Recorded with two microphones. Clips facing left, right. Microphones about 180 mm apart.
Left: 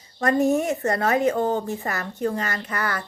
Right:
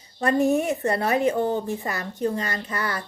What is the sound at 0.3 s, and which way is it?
A woman's voice, 15° right (ahead or behind).